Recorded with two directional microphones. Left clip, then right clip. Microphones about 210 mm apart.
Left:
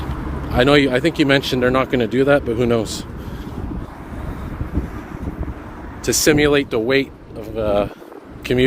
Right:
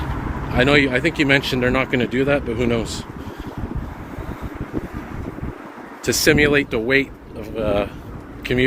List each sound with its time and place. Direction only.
0.5 s speech: 25° left (ahead or behind)
6.1 s speech: 15° left (ahead or behind)